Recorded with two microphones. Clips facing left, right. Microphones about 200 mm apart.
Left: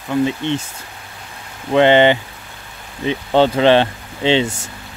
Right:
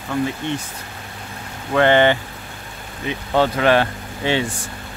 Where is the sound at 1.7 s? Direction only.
20° left (ahead or behind).